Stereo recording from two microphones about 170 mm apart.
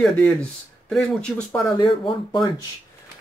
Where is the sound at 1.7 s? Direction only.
30° left (ahead or behind).